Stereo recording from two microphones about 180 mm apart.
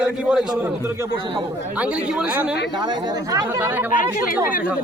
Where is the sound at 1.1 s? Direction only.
30° right (ahead or behind).